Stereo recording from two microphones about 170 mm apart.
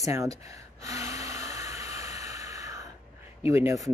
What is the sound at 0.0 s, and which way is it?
Gasp, 20° right (ahead or behind).